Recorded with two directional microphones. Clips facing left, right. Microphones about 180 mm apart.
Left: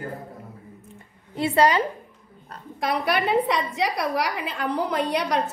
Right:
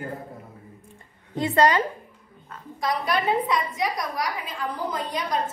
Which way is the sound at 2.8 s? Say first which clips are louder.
Left 1 dB; 65° left (ahead or behind).